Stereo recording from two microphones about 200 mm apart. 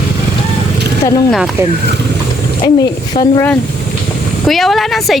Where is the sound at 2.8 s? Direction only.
20° left (ahead or behind).